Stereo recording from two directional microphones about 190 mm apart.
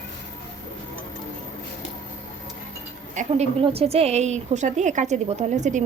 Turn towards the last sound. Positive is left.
turn(degrees=-40)  # may be behind; listen again after turning